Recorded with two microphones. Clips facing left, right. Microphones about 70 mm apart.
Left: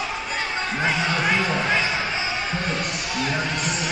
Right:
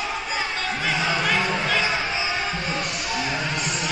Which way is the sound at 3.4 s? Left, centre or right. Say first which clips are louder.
Left 1 dB; centre.